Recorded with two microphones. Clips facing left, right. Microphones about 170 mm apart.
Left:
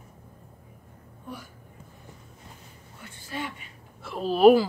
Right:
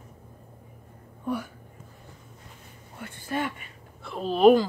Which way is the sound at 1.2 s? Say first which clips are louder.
Right 11 dB; 65° right (ahead or behind).